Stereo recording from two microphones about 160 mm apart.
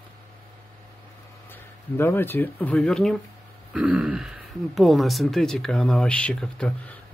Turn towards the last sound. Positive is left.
turn(degrees=5)  # may be behind; listen again after turning